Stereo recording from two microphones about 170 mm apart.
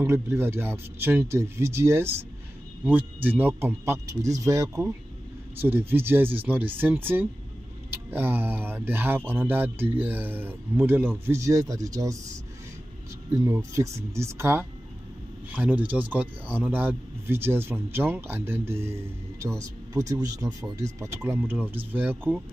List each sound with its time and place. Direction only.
0.0 s speech: 15° right (ahead or behind)
13.3 s speech: 15° right (ahead or behind)